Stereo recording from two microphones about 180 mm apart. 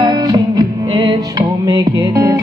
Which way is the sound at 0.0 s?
25° right (ahead or behind).